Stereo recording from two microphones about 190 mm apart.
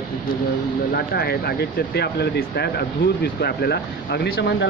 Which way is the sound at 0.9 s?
55° left (ahead or behind).